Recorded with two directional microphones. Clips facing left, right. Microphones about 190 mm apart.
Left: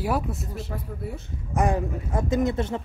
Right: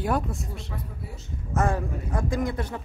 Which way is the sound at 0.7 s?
55° left (ahead or behind).